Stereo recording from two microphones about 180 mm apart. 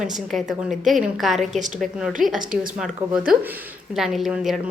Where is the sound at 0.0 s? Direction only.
Centre (ahead or behind).